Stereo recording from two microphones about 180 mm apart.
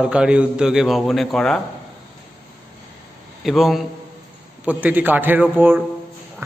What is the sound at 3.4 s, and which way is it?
A man's voice, centre (ahead or behind).